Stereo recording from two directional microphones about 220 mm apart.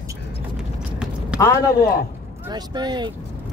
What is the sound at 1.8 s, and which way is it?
Speech, 40° left (ahead or behind).